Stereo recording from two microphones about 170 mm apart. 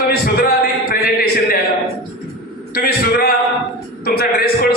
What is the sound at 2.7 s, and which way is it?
A man's voice, 60° left (ahead or behind).